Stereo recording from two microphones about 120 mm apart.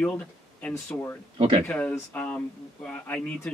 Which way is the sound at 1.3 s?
50° right (ahead or behind).